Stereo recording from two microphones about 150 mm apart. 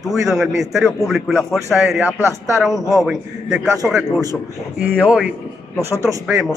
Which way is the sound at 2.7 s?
25° right (ahead or behind).